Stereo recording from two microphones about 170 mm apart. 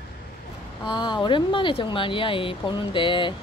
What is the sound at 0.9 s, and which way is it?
Speech, 25° left (ahead or behind).